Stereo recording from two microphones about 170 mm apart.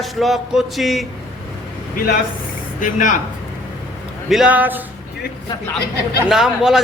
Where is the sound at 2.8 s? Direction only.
50° left (ahead or behind).